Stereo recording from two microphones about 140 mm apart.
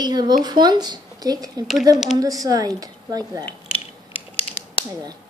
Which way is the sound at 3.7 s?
40° left (ahead or behind).